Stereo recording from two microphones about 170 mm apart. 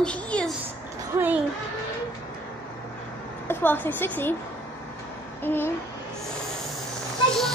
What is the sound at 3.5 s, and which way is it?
Speech, 10° left (ahead or behind).